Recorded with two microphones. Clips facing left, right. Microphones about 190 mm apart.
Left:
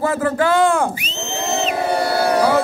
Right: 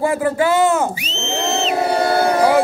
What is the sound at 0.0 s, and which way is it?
Speech, 10° right (ahead or behind).